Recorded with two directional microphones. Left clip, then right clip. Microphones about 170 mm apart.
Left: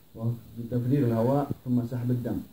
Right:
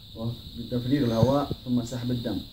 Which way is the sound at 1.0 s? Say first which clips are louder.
Right 2 dB; 10° right (ahead or behind).